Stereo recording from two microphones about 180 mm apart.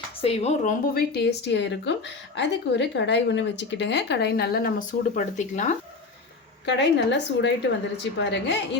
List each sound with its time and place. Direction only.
0.2 s speech: 35° left (ahead or behind)
1.1 s a woman's voice: 70° left (ahead or behind); by 5.7 s 40° left (ahead or behind)
6.7 s a woman's voice: 75° left (ahead or behind)